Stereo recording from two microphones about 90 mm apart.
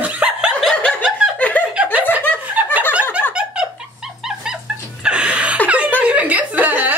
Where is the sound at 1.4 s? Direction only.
20° left (ahead or behind).